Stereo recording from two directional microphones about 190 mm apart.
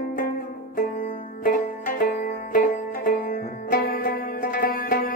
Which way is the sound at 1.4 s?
45° left (ahead or behind).